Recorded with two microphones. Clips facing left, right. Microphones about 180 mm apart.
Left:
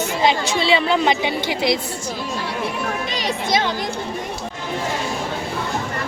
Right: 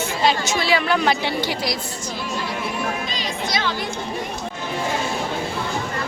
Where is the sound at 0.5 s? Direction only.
25° left (ahead or behind).